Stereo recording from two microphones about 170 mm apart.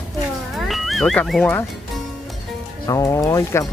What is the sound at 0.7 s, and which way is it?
Speech, centre (ahead or behind).